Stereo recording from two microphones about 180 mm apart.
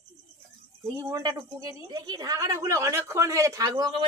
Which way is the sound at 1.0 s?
20° right (ahead or behind).